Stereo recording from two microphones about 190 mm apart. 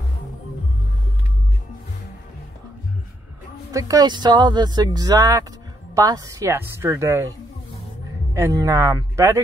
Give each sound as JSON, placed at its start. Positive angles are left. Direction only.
{"t": 3.7, "sound": "a woman's voice", "side_deg": -15}